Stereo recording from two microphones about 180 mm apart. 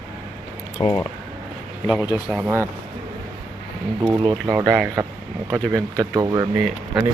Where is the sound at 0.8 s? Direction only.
30° left (ahead or behind).